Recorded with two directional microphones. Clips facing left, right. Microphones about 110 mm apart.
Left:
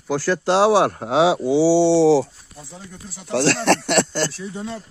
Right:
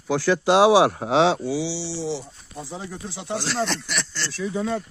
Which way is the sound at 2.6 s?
90° right.